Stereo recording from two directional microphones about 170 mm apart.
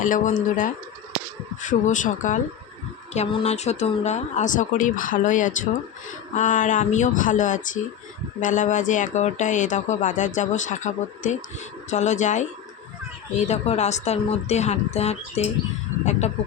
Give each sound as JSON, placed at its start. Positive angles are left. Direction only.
{"t": 0.0, "sound": "speech", "side_deg": 50}